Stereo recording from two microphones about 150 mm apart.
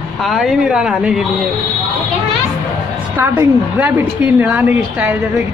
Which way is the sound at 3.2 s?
10° right (ahead or behind).